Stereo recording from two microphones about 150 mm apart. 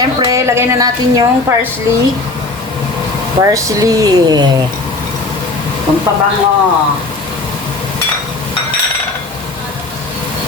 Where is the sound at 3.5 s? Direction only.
20° right (ahead or behind).